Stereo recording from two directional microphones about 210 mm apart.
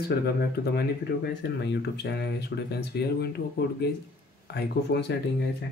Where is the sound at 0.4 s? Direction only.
50° left (ahead or behind).